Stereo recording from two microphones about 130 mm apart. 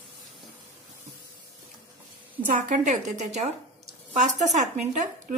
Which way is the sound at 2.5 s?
70° right (ahead or behind).